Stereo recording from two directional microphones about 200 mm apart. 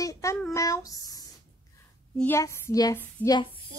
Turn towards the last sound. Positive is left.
turn(degrees=20)  # may be behind; listen again after turning